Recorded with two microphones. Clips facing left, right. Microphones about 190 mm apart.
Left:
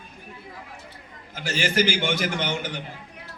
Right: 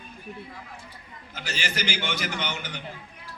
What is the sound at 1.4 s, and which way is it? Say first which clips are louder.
A man's voice: left 8 dB; 50° left (ahead or behind).